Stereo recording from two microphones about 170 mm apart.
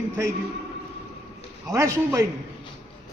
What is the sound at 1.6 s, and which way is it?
Speech, 15° right (ahead or behind).